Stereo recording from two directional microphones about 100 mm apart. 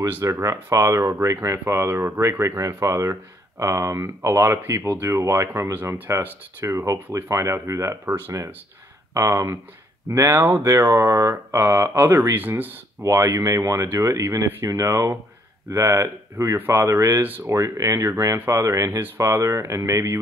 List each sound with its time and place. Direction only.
0.2 s speech: 30° right (ahead or behind)
13.0 s speech: 30° right (ahead or behind)
17.6 s speech: 35° right (ahead or behind)